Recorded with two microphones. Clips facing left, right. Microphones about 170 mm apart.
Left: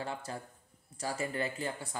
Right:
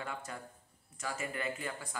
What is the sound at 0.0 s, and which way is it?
Speech, 30° left (ahead or behind).